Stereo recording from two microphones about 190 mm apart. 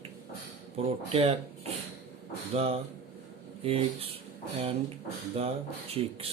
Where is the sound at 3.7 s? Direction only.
30° right (ahead or behind).